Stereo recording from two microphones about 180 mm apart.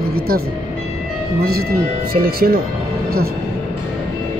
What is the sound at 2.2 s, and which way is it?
Speech, 55° right (ahead or behind).